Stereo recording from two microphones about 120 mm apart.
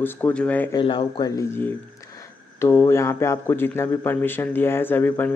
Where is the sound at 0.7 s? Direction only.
45° left (ahead or behind).